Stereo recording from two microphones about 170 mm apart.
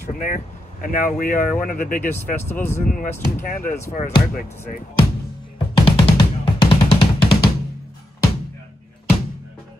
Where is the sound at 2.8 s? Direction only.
55° left (ahead or behind).